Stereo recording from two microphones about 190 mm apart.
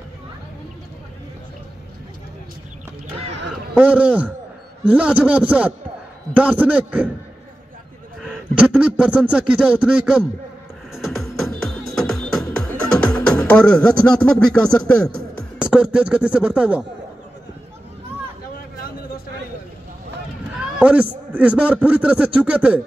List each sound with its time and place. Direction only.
3.7 s a man's voice: 5° right (ahead or behind)
8.2 s a sound: 5° right (ahead or behind)
11.0 s music: centre (ahead or behind)
15.0 s music: 50° right (ahead or behind)
15.6 s speech: 5° right (ahead or behind)
20.5 s a man's voice: 5° right (ahead or behind)